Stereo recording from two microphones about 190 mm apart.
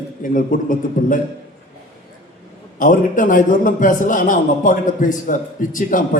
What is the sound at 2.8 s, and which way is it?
A man's voice, 45° left (ahead or behind).